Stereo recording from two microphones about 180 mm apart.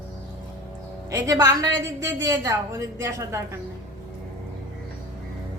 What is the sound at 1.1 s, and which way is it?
A woman's voice, 20° right (ahead or behind).